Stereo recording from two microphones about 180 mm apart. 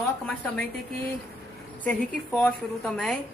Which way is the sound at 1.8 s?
5° left (ahead or behind).